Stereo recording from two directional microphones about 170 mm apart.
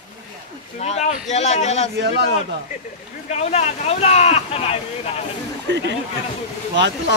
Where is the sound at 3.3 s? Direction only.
40° left (ahead or behind).